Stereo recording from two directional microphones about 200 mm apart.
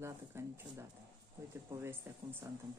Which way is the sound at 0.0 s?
15° right (ahead or behind).